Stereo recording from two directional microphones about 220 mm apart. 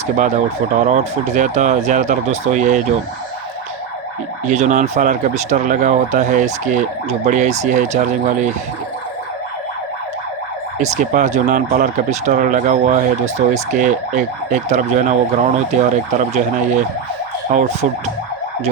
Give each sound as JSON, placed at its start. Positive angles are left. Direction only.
{"t": 0.2, "sound": "speech", "side_deg": -35}
{"t": 4.4, "sound": "speech", "side_deg": -35}
{"t": 10.8, "sound": "speech", "side_deg": -35}